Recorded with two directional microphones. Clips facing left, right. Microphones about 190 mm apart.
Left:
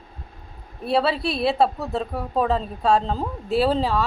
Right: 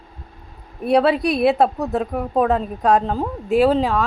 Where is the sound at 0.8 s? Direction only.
15° right (ahead or behind).